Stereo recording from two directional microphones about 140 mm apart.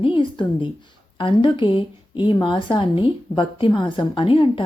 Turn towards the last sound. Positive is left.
turn(degrees=40)  # may be behind; listen again after turning